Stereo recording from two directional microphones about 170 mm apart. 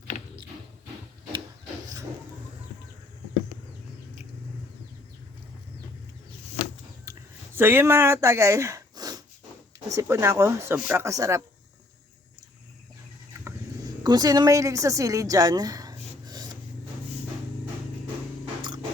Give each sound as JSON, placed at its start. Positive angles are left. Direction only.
{"t": 7.5, "sound": "speech", "side_deg": -15}
{"t": 14.0, "sound": "speech", "side_deg": -25}
{"t": 18.6, "sound": "music", "side_deg": -25}